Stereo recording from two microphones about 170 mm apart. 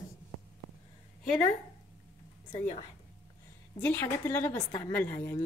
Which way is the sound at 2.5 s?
40° left (ahead or behind).